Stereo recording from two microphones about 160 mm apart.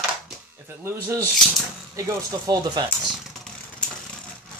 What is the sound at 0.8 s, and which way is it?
Speech, 15° right (ahead or behind).